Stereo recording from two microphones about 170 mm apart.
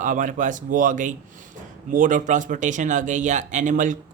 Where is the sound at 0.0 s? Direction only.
50° right (ahead or behind).